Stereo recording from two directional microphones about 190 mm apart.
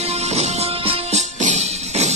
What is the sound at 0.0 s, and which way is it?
Music, 35° right (ahead or behind).